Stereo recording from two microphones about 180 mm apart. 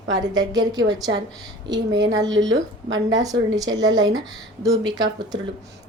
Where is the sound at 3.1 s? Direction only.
20° right (ahead or behind).